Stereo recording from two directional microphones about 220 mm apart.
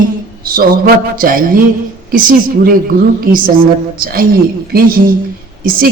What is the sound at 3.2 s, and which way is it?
A woman's voice, 40° right (ahead or behind).